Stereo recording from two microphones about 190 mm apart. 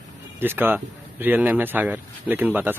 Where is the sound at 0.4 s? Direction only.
10° right (ahead or behind).